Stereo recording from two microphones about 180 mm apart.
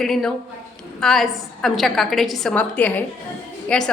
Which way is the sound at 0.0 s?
Centre (ahead or behind).